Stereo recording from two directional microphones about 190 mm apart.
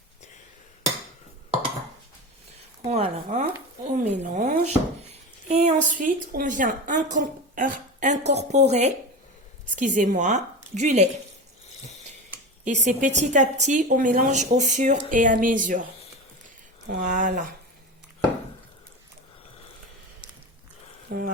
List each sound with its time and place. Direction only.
2.8 s a woman's voice: 35° right (ahead or behind)
12.6 s a woman's voice: 40° right (ahead or behind)
21.1 s speech: 50° right (ahead or behind)